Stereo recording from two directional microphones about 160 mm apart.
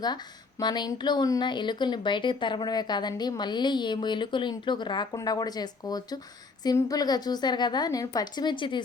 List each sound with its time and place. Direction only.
0.6 s speech: 25° left (ahead or behind)